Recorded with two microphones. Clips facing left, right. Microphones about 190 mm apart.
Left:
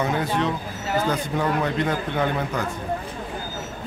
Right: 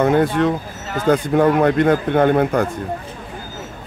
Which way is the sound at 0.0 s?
55° right (ahead or behind).